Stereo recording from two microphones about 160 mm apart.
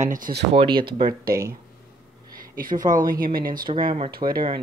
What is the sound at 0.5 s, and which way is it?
Speech, 30° right (ahead or behind).